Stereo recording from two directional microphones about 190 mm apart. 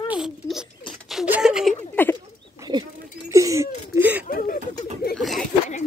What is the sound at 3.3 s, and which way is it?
Whimper, 15° right (ahead or behind).